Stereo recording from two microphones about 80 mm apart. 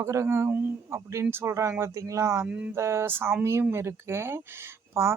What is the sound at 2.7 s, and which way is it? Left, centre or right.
Speech, right.